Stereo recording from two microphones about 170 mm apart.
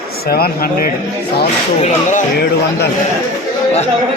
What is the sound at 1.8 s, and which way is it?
Speech, 45° left (ahead or behind).